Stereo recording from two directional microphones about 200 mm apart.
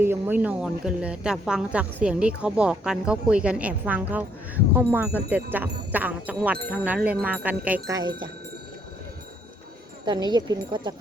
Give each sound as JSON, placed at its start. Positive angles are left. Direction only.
{"t": 0.0, "sound": "speech", "side_deg": -10}
{"t": 7.9, "sound": "speech", "side_deg": -20}
{"t": 10.1, "sound": "speech", "side_deg": -20}